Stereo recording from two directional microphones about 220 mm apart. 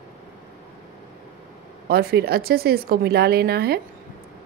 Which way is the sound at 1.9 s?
45° right (ahead or behind).